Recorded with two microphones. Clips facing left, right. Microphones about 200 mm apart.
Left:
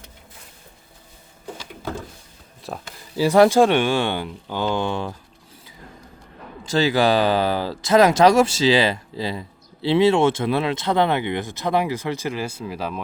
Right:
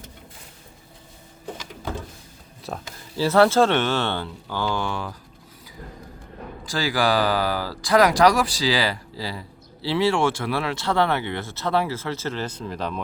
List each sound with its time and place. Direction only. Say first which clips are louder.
2.7 s speech: even; centre (ahead or behind)
3.2 s speech: left 3 dB; 15° left (ahead or behind)
6.7 s speech: left 5 dB; 25° left (ahead or behind); by 13.0 s 5° left (ahead or behind)